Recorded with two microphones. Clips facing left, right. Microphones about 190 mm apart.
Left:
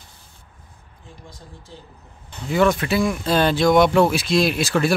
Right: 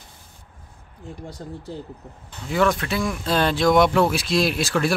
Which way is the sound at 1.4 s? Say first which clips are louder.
Right 10 dB; 80° right.